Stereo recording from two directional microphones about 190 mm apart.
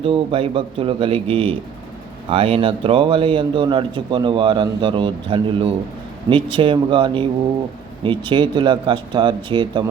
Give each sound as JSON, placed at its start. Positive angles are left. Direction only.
{"t": 0.0, "sound": "a man's voice", "side_deg": -30}